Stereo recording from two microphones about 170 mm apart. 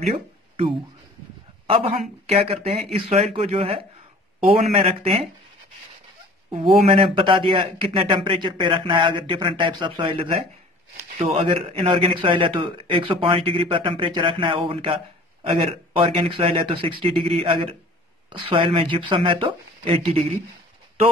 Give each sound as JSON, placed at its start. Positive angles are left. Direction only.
{"t": 1.7, "sound": "speech", "side_deg": -30}
{"t": 6.5, "sound": "speech", "side_deg": -30}